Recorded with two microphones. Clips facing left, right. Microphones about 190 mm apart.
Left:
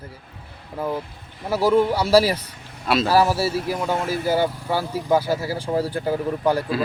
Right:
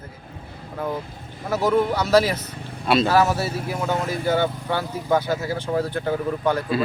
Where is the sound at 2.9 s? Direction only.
5° left (ahead or behind).